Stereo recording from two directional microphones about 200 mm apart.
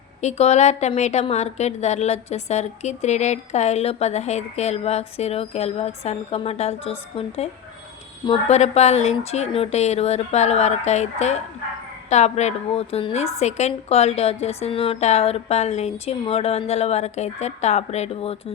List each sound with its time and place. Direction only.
0.2 s a woman's voice: 35° left (ahead or behind)
8.3 s a woman's voice: 35° left (ahead or behind)